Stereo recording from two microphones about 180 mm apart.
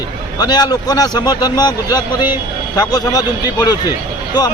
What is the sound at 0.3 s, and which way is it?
Speech, 20° left (ahead or behind).